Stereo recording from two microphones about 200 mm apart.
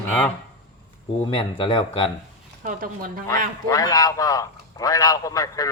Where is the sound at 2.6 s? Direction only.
45° right (ahead or behind).